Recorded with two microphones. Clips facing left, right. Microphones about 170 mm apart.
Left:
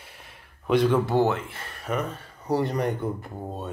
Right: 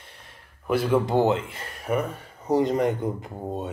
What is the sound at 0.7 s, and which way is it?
Speech, 5° right (ahead or behind).